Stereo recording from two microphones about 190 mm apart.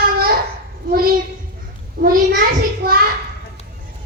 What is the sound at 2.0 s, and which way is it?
Speech, 55° right (ahead or behind).